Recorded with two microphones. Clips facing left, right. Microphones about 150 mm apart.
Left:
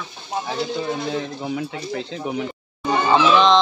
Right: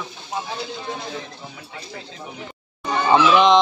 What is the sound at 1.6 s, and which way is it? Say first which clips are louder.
Speech: left 10 dB; 80° left.